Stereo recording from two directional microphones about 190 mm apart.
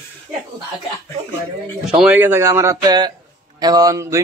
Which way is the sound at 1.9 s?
5° right (ahead or behind).